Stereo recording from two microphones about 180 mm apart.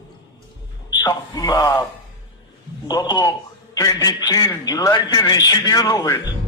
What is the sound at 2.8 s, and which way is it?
A man's voice, 25° left (ahead or behind).